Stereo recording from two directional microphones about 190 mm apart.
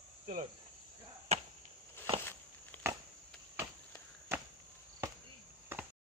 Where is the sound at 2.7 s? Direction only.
10° left (ahead or behind).